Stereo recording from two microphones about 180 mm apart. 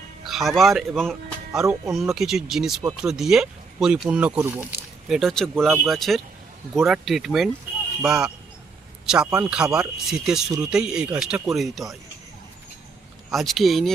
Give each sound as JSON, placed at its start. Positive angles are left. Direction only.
{"t": 0.3, "sound": "speech", "side_deg": 0}
{"t": 1.6, "sound": "speech", "side_deg": -15}
{"t": 2.0, "sound": "speech", "side_deg": 0}
{"t": 5.0, "sound": "speech", "side_deg": 0}
{"t": 13.3, "sound": "speech", "side_deg": 0}